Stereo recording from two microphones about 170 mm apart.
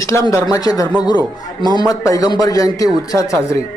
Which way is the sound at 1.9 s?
20° left (ahead or behind).